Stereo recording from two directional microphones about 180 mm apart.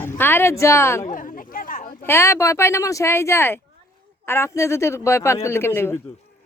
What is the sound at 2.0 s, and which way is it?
Speech, 15° left (ahead or behind).